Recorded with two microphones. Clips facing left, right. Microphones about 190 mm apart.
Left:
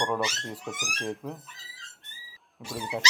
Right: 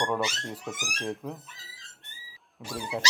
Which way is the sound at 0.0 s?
Centre (ahead or behind).